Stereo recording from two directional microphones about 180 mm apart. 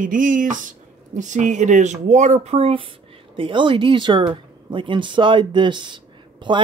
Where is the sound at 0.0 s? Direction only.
45° right (ahead or behind).